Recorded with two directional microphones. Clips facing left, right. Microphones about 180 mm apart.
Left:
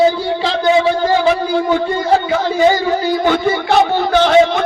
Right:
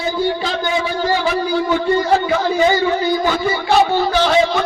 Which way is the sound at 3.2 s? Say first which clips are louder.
Left 3 dB; 55° left (ahead or behind).